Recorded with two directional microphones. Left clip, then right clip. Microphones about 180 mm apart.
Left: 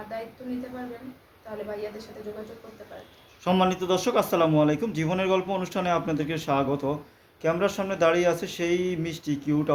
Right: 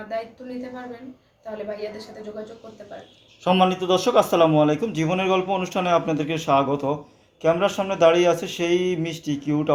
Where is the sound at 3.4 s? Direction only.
25° left (ahead or behind).